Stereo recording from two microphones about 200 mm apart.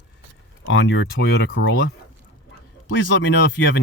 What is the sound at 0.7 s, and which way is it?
Speech, 65° left (ahead or behind).